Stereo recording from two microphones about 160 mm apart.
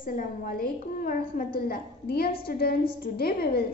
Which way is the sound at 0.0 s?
60° left (ahead or behind).